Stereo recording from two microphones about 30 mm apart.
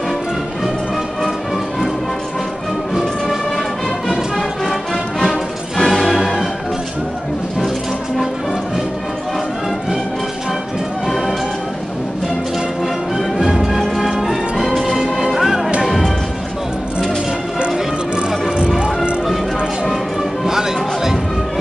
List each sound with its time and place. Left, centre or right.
4.1 s music: centre
13.4 s music: centre
14.0 s music: centre
20.4 s music: centre